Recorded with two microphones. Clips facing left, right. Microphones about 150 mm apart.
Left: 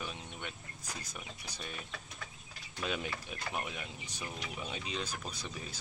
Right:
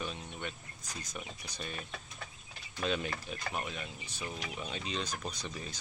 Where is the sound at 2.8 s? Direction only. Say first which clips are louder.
Right 3 dB; 10° left (ahead or behind).